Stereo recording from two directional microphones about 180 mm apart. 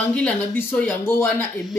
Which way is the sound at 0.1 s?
10° left (ahead or behind).